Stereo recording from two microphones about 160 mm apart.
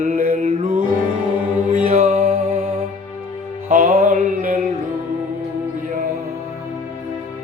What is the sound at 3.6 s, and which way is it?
Music, 55° right (ahead or behind).